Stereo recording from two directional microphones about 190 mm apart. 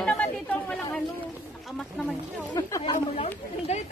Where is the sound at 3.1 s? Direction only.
35° left (ahead or behind).